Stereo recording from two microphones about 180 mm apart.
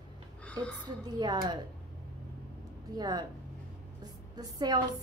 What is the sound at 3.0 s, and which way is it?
A woman's voice, 20° right (ahead or behind).